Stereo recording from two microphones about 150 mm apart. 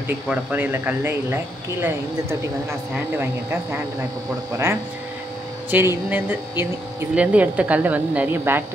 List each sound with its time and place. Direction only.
0.3 s speech: 10° right (ahead or behind)
5.7 s speech: 10° right (ahead or behind)